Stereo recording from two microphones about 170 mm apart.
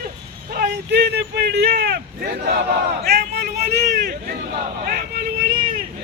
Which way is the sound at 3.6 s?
40° right (ahead or behind).